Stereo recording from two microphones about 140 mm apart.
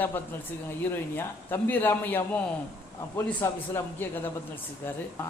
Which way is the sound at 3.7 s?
15° left (ahead or behind).